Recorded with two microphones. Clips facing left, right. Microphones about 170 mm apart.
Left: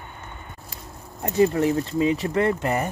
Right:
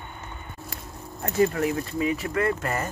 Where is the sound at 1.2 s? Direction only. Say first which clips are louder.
Left 3 dB; 25° left (ahead or behind).